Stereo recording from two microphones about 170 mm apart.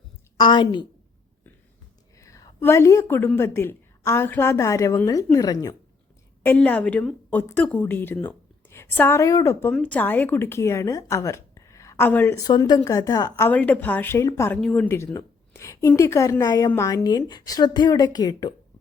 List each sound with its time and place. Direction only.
0.3 s a woman's voice: 25° left (ahead or behind)
2.1 s a woman's voice: 20° left (ahead or behind)
13.5 s a woman's voice: 10° left (ahead or behind); by 18.5 s 25° left (ahead or behind)